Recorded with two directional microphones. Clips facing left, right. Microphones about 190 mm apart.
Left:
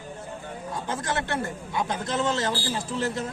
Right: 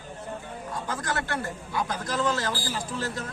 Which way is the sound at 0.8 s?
25° left (ahead or behind).